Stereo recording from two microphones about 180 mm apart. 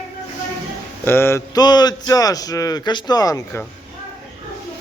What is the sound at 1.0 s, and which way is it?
Speech, 15° left (ahead or behind).